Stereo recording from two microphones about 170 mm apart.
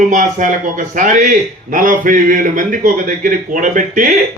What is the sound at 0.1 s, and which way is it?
Speech, 50° right (ahead or behind).